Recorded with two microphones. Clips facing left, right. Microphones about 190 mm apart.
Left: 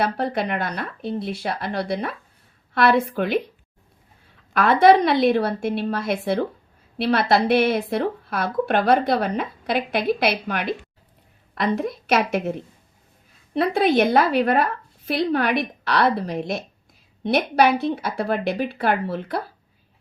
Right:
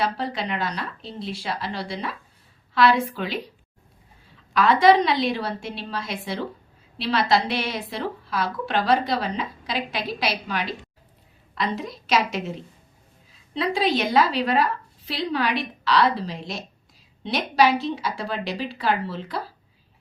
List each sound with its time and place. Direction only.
0.0 s a woman's voice: 55° left (ahead or behind)
4.5 s a woman's voice: 55° left (ahead or behind)